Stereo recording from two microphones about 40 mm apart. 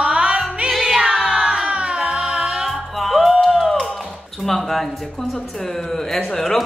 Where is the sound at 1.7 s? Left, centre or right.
Right.